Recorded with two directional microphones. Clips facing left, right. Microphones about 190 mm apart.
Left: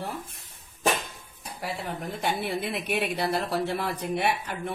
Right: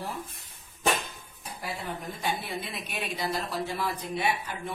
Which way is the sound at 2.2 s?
65° left (ahead or behind).